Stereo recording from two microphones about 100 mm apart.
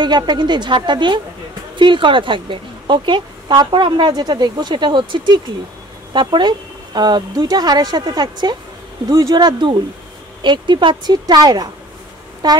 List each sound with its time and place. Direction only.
0.0 s a woman's voice: 50° right (ahead or behind)